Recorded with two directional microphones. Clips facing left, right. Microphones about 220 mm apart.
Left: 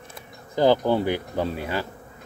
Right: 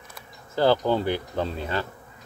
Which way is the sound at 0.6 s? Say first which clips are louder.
Left 2 dB; 15° left (ahead or behind).